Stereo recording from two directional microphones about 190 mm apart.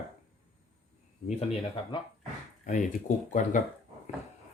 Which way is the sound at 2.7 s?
45° left (ahead or behind).